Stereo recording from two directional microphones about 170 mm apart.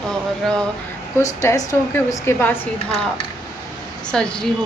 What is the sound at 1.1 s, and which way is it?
A woman's voice, 20° left (ahead or behind).